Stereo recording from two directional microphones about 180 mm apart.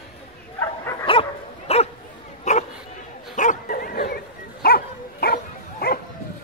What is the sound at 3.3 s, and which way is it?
Bow-wow, 45° left (ahead or behind).